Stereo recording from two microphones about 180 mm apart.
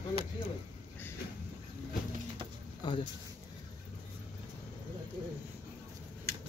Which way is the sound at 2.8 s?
25° left (ahead or behind).